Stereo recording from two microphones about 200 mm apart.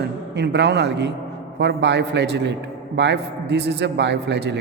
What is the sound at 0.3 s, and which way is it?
A man's voice, 60° right (ahead or behind).